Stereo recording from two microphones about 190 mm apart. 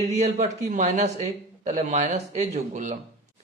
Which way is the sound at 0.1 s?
40° right (ahead or behind).